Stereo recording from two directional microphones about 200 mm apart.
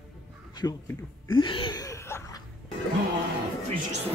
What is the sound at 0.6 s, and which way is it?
Speech, 15° left (ahead or behind).